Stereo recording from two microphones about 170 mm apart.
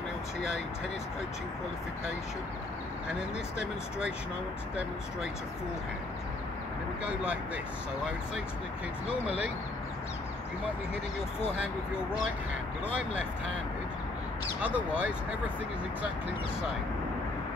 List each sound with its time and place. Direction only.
14.6 s speech: 5° right (ahead or behind)